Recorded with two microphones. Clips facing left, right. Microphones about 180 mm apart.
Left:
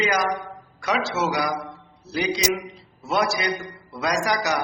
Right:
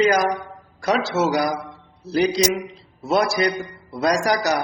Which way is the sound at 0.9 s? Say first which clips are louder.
Right 4 dB; 35° right (ahead or behind).